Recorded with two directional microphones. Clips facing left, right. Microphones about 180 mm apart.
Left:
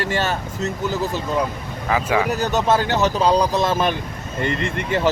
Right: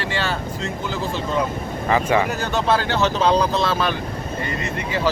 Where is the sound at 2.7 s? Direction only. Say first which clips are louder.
Even; 15° left (ahead or behind).